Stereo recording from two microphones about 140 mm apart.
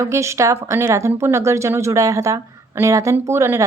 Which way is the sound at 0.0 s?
20° right (ahead or behind).